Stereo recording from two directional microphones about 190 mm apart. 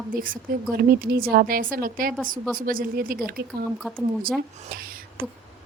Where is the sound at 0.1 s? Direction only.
45° right (ahead or behind).